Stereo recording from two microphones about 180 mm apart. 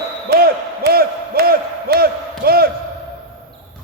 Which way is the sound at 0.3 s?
55° right (ahead or behind).